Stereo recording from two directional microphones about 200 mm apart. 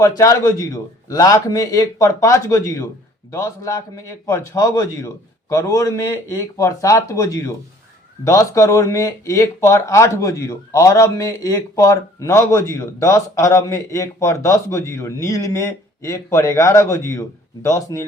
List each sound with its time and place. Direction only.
0.0 s speech: 15° left (ahead or behind)